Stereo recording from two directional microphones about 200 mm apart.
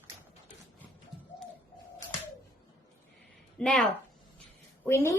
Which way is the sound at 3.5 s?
5° left (ahead or behind).